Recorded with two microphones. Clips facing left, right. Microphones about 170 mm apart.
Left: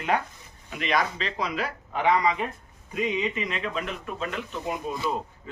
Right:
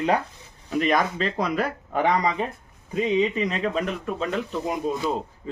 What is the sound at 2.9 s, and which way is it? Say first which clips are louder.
Speech: right 5 dB; 30° right (ahead or behind).